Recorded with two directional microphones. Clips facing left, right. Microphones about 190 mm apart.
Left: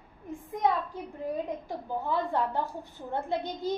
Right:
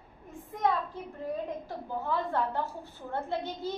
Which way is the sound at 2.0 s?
15° left (ahead or behind).